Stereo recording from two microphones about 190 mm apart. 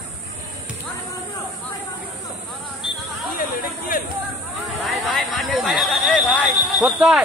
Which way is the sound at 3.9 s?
45° left (ahead or behind).